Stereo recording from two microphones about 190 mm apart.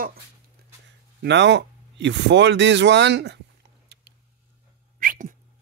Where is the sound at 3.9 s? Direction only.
60° right (ahead or behind).